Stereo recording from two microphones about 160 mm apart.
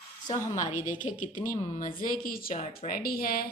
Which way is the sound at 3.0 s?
70° left (ahead or behind).